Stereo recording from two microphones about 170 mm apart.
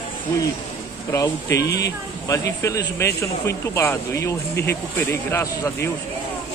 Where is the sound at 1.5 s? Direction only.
80° left.